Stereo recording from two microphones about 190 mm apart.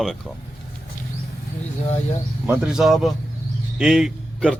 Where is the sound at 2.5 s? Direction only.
5° right (ahead or behind).